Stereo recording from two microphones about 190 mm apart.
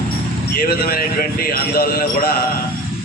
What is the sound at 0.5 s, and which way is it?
A man's voice, 55° left (ahead or behind).